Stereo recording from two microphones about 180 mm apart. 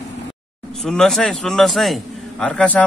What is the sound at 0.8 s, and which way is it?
A man's voice, 5° left (ahead or behind).